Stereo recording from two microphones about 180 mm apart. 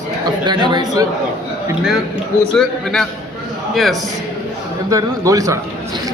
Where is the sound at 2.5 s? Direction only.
5° left (ahead or behind).